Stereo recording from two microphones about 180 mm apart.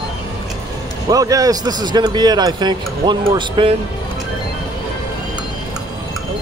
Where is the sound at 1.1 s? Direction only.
20° right (ahead or behind).